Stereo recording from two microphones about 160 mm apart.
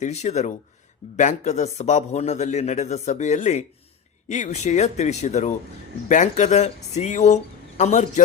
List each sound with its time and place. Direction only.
0.0 s a man's voice: 45° left (ahead or behind)